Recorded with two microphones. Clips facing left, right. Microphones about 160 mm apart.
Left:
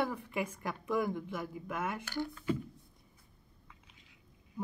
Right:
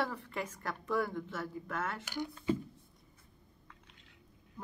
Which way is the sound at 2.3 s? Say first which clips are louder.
Right 4 dB; 25° right (ahead or behind).